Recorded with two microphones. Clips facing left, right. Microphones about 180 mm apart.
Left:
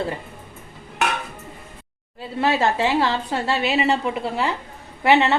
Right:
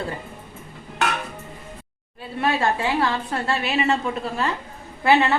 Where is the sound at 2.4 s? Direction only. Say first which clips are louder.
Left 2 dB; 25° left (ahead or behind).